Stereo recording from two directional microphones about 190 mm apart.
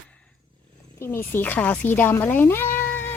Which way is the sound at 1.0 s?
10° left (ahead or behind).